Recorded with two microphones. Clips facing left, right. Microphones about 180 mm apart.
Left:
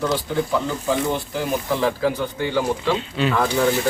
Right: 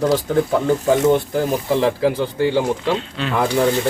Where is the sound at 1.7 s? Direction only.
25° right (ahead or behind).